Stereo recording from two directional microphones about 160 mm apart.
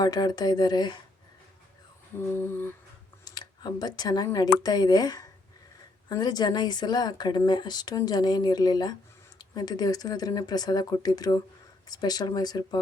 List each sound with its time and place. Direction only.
0.0 s speech: 25° left (ahead or behind)
2.1 s a sound: 15° left (ahead or behind)
3.2 s speech: 25° left (ahead or behind)